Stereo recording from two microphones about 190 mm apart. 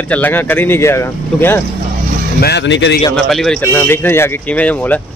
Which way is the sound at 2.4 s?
65° left (ahead or behind).